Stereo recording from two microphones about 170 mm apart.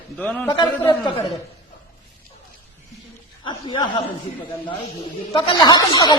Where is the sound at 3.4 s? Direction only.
25° left (ahead or behind).